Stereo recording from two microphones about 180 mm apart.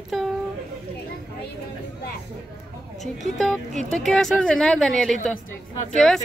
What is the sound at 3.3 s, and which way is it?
Speech, centre (ahead or behind).